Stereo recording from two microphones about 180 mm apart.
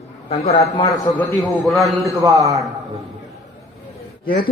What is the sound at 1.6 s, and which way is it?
Speech, centre (ahead or behind).